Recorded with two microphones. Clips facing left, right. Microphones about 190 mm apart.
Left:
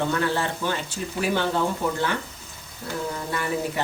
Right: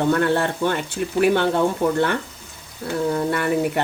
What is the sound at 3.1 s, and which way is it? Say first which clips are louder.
Speech: right 6 dB; 60° right (ahead or behind).